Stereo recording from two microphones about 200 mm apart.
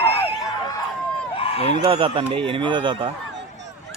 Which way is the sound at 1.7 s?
25° right (ahead or behind).